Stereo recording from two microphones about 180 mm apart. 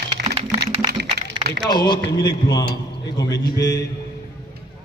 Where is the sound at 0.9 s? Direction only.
70° right (ahead or behind).